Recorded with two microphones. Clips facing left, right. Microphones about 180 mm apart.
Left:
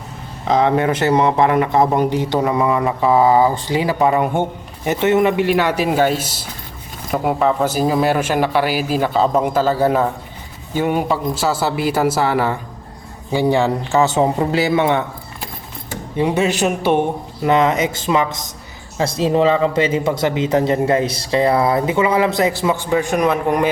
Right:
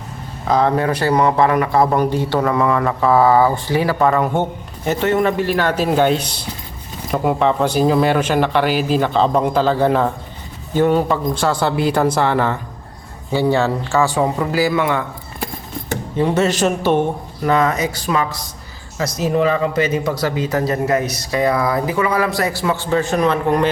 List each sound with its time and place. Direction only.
0.4 s a man's voice: 20° left (ahead or behind)
16.1 s a man's voice: 15° left (ahead or behind)